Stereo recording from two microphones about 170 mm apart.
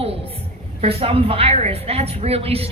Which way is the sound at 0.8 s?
35° right (ahead or behind).